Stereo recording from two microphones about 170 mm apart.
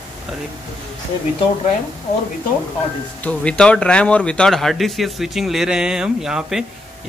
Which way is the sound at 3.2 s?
5° left (ahead or behind).